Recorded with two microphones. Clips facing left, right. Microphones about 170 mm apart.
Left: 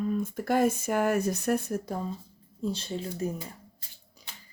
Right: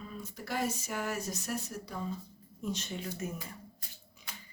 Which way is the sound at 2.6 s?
30° left (ahead or behind).